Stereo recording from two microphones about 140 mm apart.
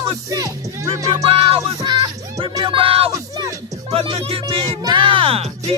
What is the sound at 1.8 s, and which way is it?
Music, 25° right (ahead or behind).